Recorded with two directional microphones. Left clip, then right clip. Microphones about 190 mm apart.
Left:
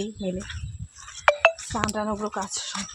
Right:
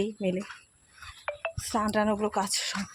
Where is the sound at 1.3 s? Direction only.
50° left (ahead or behind).